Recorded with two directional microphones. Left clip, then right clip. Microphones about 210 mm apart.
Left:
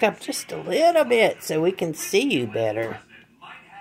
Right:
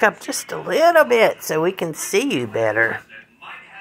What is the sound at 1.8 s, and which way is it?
Speech, 15° right (ahead or behind).